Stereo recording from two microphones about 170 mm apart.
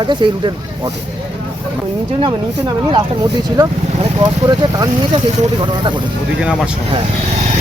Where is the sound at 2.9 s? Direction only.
25° right (ahead or behind).